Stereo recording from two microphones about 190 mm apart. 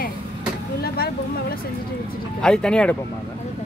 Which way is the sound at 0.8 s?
55° left (ahead or behind).